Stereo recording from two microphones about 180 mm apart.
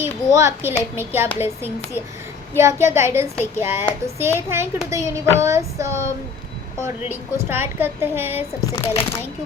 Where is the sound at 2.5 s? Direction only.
15° right (ahead or behind).